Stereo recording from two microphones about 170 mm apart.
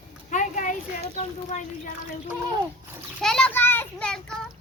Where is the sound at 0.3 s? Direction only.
50° left (ahead or behind).